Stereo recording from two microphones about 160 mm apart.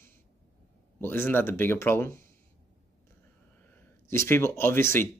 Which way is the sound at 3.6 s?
10° left (ahead or behind).